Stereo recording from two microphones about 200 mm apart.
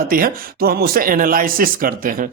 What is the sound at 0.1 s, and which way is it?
Speech, 45° right (ahead or behind).